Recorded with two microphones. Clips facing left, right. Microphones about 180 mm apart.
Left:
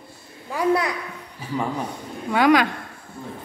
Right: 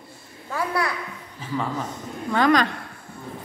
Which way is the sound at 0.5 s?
20° left (ahead or behind).